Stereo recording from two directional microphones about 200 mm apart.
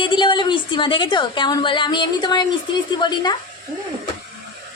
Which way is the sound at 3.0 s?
20° left (ahead or behind).